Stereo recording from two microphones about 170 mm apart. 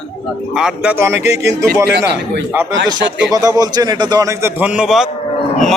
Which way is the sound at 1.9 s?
75° right (ahead or behind).